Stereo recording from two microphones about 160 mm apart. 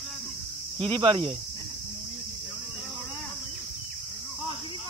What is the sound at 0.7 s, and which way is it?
Speech, 30° right (ahead or behind).